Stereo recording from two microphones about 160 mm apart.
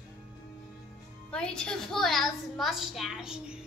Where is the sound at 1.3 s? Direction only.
5° left (ahead or behind).